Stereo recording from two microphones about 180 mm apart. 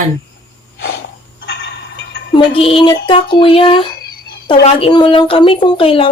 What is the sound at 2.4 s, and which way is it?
Speech, 30° left (ahead or behind).